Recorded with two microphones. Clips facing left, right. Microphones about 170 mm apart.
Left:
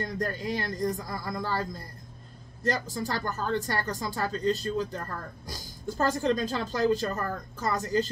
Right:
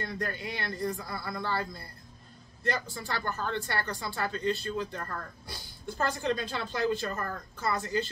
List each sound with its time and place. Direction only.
0.0 s speech: 40° left (ahead or behind)